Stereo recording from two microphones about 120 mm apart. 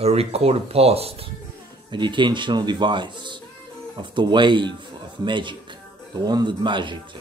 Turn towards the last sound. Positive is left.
turn(degrees=-40)  # may be behind; listen again after turning